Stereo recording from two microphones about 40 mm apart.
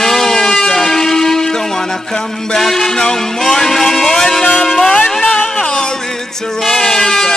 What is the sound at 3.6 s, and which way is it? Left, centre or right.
Vehicle, centre.